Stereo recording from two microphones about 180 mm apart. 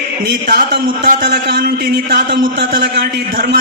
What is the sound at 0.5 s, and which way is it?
A man's voice, 60° right (ahead or behind).